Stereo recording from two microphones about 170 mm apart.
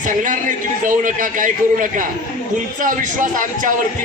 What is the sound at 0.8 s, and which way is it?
A man's voice, 50° right (ahead or behind).